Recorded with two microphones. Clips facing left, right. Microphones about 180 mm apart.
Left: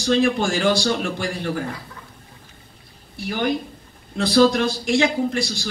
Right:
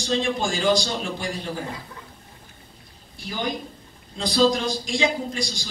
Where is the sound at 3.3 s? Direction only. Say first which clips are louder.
Left 6 dB; 65° left (ahead or behind).